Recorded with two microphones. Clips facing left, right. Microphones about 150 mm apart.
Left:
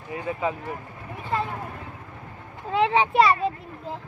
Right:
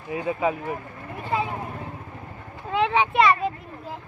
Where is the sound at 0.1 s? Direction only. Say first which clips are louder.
Right 3 dB; 20° right (ahead or behind).